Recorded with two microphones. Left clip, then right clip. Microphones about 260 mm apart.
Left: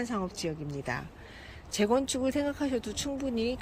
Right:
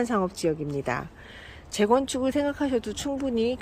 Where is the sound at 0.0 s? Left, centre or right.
Centre.